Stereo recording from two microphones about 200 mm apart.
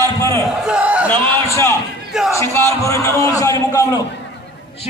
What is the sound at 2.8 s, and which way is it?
A man's voice, 15° left (ahead or behind).